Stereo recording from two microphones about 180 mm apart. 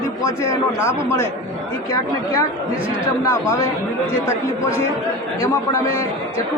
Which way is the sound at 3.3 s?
15° left (ahead or behind).